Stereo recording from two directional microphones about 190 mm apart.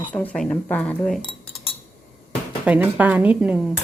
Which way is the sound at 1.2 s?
25° left (ahead or behind).